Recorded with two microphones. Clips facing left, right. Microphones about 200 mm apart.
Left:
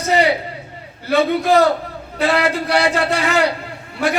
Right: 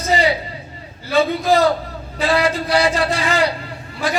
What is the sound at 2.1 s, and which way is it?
A man's voice, 60° left (ahead or behind).